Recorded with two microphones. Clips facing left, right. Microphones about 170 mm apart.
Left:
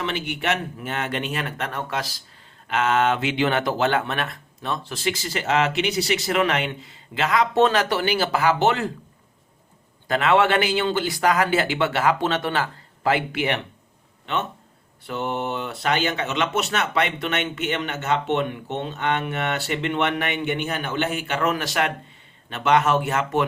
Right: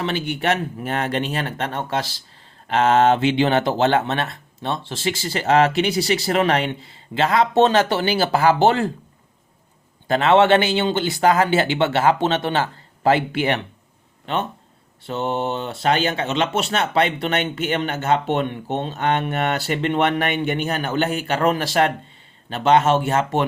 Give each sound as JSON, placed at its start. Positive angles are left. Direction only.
{"t": 0.0, "sound": "speech", "side_deg": -35}
{"t": 10.1, "sound": "speech", "side_deg": -30}